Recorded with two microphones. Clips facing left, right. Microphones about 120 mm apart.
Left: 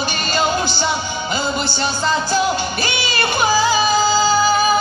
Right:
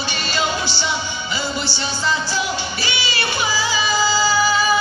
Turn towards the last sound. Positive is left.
turn(degrees=50)  # may be behind; listen again after turning